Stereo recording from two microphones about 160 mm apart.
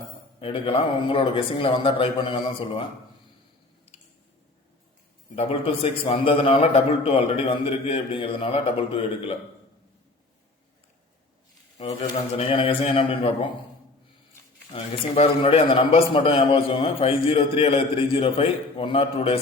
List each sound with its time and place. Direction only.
0.3 s a man's voice: 35° left (ahead or behind)
5.3 s a man's voice: 40° left (ahead or behind)
12.4 s a man's voice: 35° left (ahead or behind)
14.7 s a man's voice: 35° left (ahead or behind)